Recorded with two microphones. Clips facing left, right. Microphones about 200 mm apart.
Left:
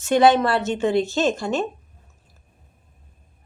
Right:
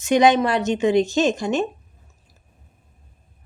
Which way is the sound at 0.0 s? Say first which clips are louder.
Even; 15° right (ahead or behind).